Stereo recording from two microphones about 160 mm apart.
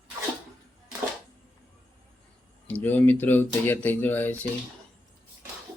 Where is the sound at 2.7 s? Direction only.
10° left (ahead or behind).